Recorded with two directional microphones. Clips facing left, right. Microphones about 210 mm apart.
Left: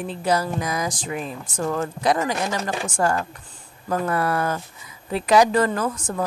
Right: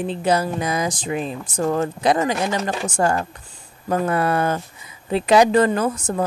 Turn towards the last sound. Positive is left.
turn(degrees=-25)  # may be behind; listen again after turning